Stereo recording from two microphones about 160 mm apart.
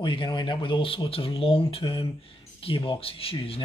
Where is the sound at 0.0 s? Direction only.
30° left (ahead or behind).